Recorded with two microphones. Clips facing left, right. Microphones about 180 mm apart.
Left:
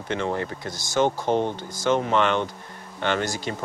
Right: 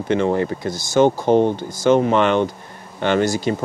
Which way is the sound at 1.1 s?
45° right (ahead or behind).